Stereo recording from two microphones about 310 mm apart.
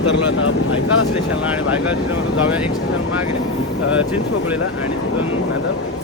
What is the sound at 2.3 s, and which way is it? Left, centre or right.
Speech, centre.